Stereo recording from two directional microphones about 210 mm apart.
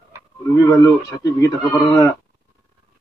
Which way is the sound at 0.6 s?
15° left (ahead or behind).